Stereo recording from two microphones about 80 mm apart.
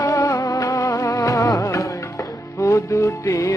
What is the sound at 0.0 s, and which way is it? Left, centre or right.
Music, left.